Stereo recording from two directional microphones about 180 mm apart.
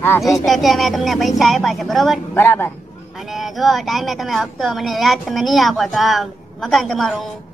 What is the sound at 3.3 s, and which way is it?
Speech, centre (ahead or behind).